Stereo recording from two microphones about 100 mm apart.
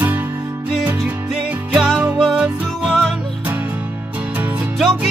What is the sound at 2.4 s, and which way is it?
Music, 5° right (ahead or behind).